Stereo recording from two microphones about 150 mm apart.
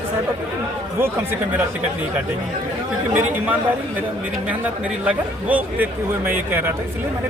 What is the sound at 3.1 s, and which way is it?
A man's voice, 10° right (ahead or behind).